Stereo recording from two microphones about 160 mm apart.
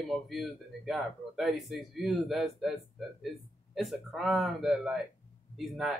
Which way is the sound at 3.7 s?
Centre (ahead or behind).